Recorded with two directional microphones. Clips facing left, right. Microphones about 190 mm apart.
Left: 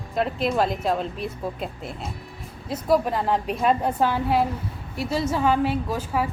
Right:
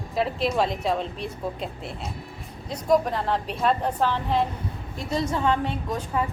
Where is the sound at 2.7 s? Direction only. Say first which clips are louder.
Left 1 dB; 5° left (ahead or behind).